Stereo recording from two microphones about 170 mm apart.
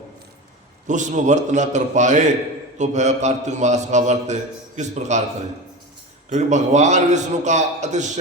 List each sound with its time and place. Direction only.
0.9 s a man's voice: 45° right (ahead or behind)
6.3 s a man's voice: 45° right (ahead or behind)